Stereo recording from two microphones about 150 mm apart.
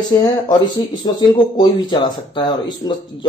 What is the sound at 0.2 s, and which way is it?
Speech, 25° left (ahead or behind).